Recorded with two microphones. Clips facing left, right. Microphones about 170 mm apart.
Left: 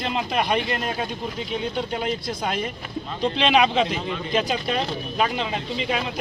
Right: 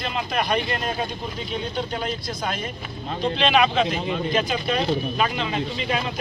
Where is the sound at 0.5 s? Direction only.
10° left (ahead or behind).